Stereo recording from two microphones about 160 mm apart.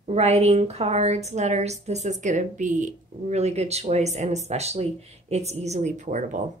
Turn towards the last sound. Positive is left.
turn(degrees=-50)  # may be behind; listen again after turning